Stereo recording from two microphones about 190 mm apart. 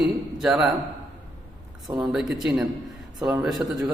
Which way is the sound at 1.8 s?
Centre (ahead or behind).